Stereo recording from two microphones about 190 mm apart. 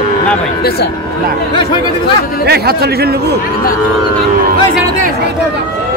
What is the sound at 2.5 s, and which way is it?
Speech, 55° right (ahead or behind).